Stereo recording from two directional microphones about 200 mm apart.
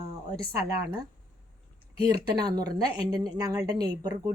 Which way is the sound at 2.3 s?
20° right (ahead or behind).